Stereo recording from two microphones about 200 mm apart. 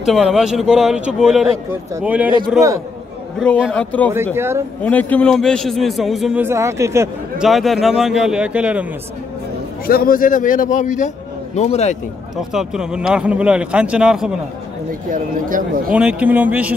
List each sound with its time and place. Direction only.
0.0 s a man's voice: centre (ahead or behind)
3.3 s a man's voice: 5° left (ahead or behind)
4.1 s speech: 10° right (ahead or behind)
4.8 s a man's voice: 5° left (ahead or behind); by 7.1 s 15° right (ahead or behind)
7.3 s a man's voice: centre (ahead or behind)
9.8 s a man's voice: 45° left (ahead or behind)
12.4 s a man's voice: centre (ahead or behind)
14.9 s speech: 45° right (ahead or behind)
15.9 s speech: 5° right (ahead or behind)